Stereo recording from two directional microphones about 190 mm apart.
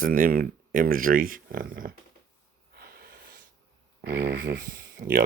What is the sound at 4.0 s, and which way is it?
Speech, 55° right (ahead or behind).